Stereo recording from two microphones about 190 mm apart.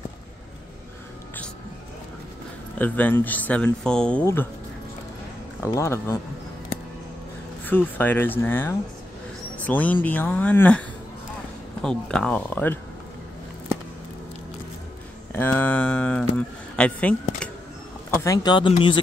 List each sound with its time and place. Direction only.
2.8 s speech: 10° left (ahead or behind)
5.8 s speech: 15° left (ahead or behind)
7.6 s a man's voice: 10° left (ahead or behind)
15.3 s speech: 10° left (ahead or behind)
18.2 s speech: 20° left (ahead or behind)